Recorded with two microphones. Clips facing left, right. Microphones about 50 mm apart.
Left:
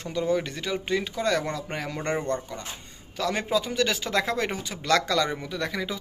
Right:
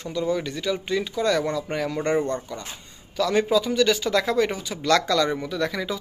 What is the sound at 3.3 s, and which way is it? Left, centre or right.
Speech, left.